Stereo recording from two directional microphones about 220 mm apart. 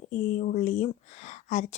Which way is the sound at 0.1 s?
35° left (ahead or behind).